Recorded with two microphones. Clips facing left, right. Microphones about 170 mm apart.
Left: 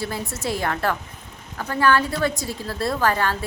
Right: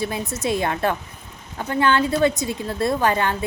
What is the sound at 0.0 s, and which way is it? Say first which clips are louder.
A woman's voice: right 3 dB; 20° right (ahead or behind).